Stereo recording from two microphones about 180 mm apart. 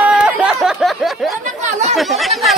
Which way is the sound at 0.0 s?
5° right (ahead or behind).